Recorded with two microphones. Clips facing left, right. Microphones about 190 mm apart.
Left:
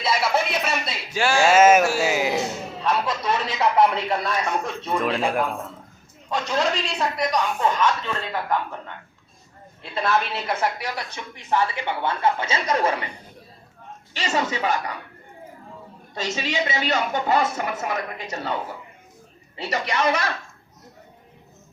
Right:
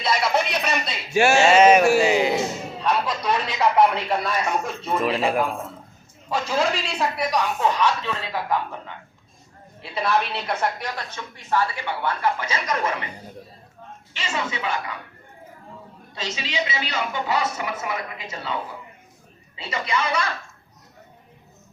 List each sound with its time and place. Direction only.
0.0 s a sound: centre (ahead or behind)
1.1 s speech: 25° right (ahead or behind)
1.5 s a sound: 5° left (ahead or behind)
2.0 s music: 5° left (ahead or behind)
2.8 s a man's voice: centre (ahead or behind)
9.8 s a woman's voice: centre (ahead or behind); by 12.9 s 30° left (ahead or behind)
14.1 s speech: 40° left (ahead or behind)
16.1 s a woman's voice: 50° left (ahead or behind)